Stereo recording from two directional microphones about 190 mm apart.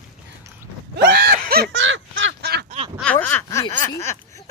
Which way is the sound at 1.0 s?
55° right (ahead or behind).